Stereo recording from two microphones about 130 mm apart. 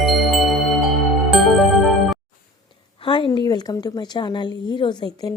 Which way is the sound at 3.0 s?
40° left (ahead or behind).